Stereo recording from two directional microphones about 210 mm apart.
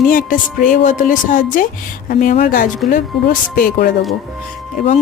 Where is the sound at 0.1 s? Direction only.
40° left (ahead or behind).